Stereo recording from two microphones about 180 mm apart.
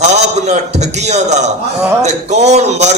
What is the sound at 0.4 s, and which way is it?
Speech, 40° right (ahead or behind).